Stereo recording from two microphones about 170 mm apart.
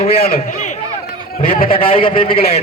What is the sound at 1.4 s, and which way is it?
A man's voice, 35° left (ahead or behind).